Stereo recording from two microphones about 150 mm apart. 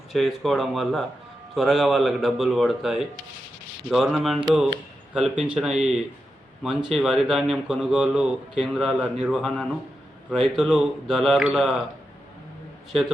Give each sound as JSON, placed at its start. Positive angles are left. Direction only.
{"t": 0.1, "sound": "a man's voice", "side_deg": 0}